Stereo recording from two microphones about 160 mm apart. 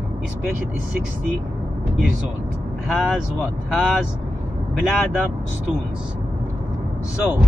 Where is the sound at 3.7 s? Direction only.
Centre (ahead or behind).